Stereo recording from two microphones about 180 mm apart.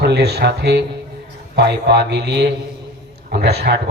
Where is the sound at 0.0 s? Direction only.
65° right (ahead or behind).